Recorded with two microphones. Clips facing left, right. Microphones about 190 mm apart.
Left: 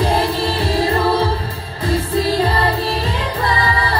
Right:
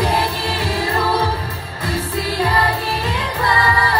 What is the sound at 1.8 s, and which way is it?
Music, 35° left (ahead or behind).